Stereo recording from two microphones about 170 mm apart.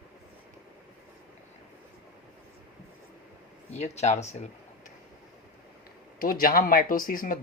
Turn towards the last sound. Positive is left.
turn(degrees=55)  # may be behind; listen again after turning